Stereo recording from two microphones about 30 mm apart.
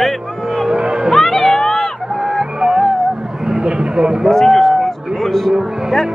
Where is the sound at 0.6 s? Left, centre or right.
Right.